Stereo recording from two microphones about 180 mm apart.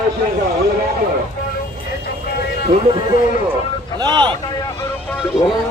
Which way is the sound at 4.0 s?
25° right (ahead or behind).